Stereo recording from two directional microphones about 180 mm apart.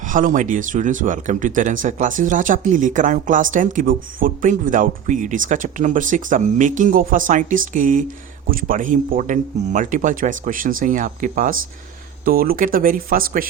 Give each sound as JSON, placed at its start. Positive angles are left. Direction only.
{"t": 0.1, "sound": "speech", "side_deg": -45}